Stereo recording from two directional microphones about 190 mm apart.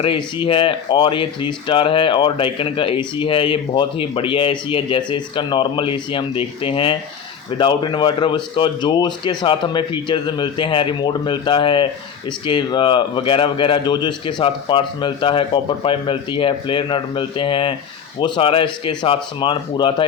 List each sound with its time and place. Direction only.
0.0 s speech: 30° left (ahead or behind)